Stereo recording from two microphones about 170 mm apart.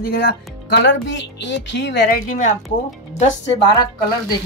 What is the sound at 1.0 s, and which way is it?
A woman's voice, 90° left.